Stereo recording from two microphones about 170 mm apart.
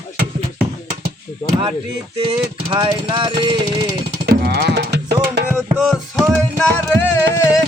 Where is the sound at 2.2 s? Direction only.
35° right (ahead or behind).